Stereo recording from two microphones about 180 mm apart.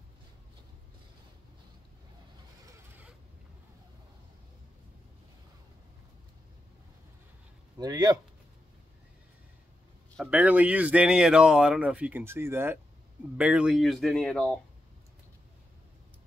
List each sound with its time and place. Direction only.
7.7 s a man's voice: 20° right (ahead or behind)
10.1 s a sound: centre (ahead or behind)
10.4 s speech: 10° right (ahead or behind)